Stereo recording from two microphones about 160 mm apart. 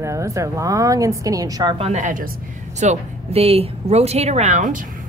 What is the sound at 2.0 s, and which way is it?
Speech, 55° right (ahead or behind).